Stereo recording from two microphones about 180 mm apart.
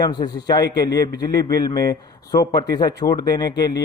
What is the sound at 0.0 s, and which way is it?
A man's voice, 25° left (ahead or behind).